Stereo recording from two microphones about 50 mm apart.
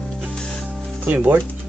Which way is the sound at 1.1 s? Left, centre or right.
Right.